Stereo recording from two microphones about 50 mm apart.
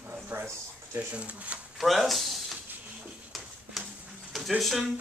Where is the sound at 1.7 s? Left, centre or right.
Centre.